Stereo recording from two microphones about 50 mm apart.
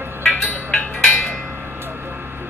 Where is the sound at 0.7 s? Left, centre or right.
Left.